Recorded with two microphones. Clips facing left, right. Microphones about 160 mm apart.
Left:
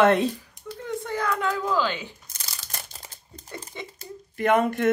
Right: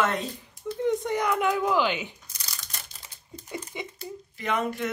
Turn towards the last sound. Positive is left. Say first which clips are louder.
# left 7 dB
turn(degrees=55)  # may be behind; listen again after turning